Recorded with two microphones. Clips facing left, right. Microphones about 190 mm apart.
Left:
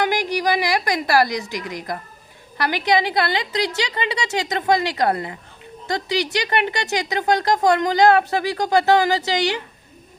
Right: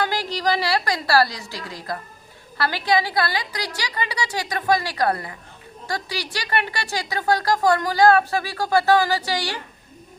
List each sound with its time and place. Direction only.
0.0 s a woman's voice: 15° left (ahead or behind)